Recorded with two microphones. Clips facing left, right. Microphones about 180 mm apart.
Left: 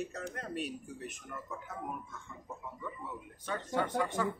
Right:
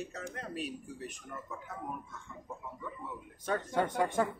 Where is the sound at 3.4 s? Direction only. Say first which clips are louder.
Right 3 dB; 50° right (ahead or behind).